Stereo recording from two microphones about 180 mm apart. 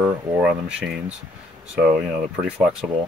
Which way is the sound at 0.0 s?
5° right (ahead or behind).